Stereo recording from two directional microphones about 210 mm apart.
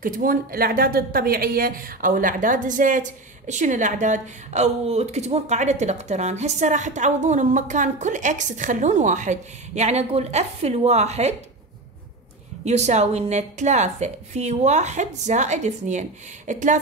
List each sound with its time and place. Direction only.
0.0 s speech: 40° right (ahead or behind)
12.6 s speech: 30° right (ahead or behind)